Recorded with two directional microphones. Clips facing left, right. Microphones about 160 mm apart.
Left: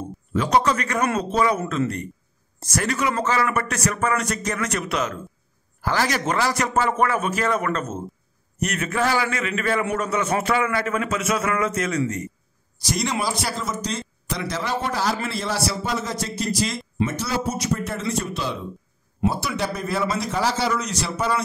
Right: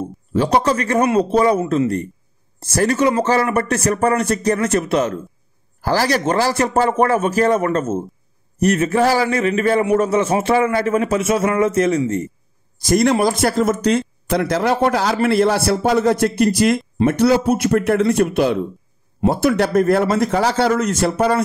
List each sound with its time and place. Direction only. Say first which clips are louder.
0.0 s a man's voice: right 6 dB; 30° right (ahead or behind)
12.7 s a man's voice: right 10 dB; 50° right (ahead or behind)